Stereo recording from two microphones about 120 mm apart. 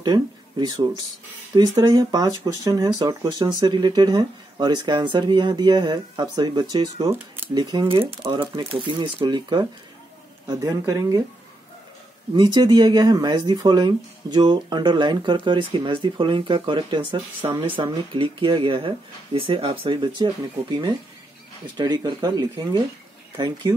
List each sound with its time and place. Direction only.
0.0 s speech: 35° right (ahead or behind)
7.1 s speech: 15° right (ahead or behind)
7.4 s speech: 35° right (ahead or behind)
12.4 s speech: 40° right (ahead or behind)
21.7 s speech: 40° right (ahead or behind)